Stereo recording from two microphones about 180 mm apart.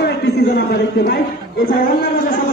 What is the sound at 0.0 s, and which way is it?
A man's voice, 60° left (ahead or behind).